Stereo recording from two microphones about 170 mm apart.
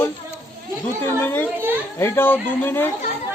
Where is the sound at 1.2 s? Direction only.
15° left (ahead or behind).